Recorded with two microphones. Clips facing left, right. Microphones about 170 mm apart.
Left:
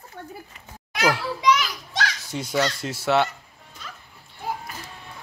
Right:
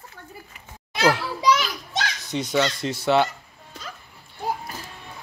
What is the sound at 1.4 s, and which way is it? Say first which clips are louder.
Children playing: even; 30° right (ahead or behind).